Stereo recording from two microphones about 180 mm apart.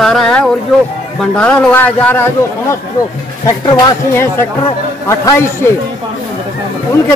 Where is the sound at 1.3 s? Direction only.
5° left (ahead or behind).